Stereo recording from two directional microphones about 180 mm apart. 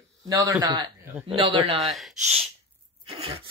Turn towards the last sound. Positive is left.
turn(degrees=-30)  # may be behind; listen again after turning